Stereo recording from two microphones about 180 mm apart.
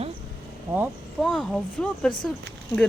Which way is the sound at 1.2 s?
5° left (ahead or behind).